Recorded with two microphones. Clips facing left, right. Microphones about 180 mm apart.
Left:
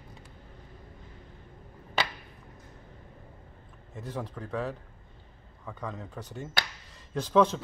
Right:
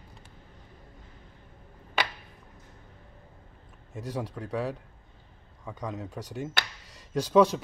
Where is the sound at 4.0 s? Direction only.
10° right (ahead or behind).